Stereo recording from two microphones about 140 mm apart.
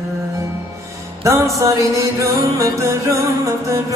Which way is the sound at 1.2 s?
20° right (ahead or behind).